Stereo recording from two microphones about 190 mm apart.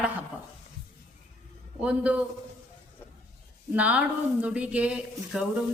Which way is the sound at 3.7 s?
5° right (ahead or behind).